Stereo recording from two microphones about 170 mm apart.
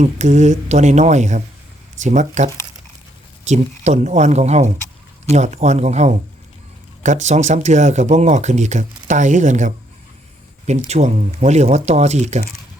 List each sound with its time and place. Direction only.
0.0 s speech: 45° right (ahead or behind)